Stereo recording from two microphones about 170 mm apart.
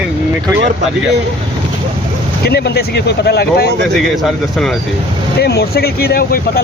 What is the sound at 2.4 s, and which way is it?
Speech, 70° left (ahead or behind).